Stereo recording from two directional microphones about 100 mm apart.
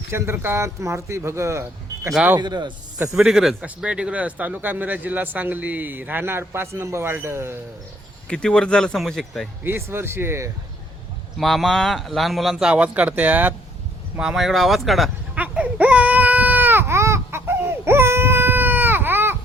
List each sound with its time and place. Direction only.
0.1 s speech: 25° right (ahead or behind)
2.4 s speech: 50° right (ahead or behind)
3.1 s speech: 5° right (ahead or behind); by 7.6 s 25° right (ahead or behind)
8.3 s speech: 10° left (ahead or behind)
9.6 s speech: 25° right (ahead or behind)
11.3 s speech: centre (ahead or behind); by 13.5 s 15° right (ahead or behind)
14.2 s speech: 5° right (ahead or behind)
15.4 s baby cry: 15° right (ahead or behind)